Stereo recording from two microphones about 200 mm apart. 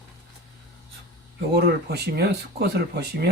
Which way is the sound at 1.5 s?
55° right (ahead or behind).